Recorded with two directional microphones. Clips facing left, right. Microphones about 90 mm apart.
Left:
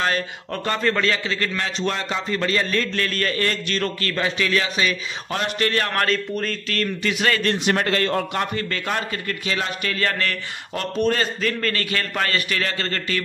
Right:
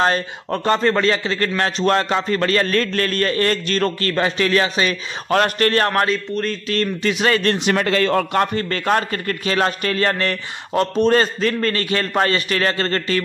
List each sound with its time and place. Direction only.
0.0 s a man's voice: 35° right (ahead or behind)
1.6 s a man's voice: 50° right (ahead or behind)
5.3 s a man's voice: 55° right (ahead or behind)
5.7 s a man's voice: 40° right (ahead or behind)
6.7 s a man's voice: 30° right (ahead or behind)
7.6 s a man's voice: 90° right
8.3 s a man's voice: 45° right (ahead or behind)